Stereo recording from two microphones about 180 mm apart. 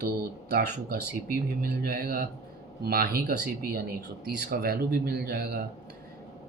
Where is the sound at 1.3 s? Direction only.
55° right (ahead or behind).